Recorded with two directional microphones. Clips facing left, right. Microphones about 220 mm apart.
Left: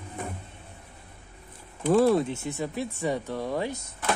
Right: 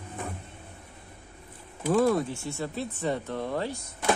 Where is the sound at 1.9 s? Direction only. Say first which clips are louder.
Left 3 dB; 25° left (ahead or behind).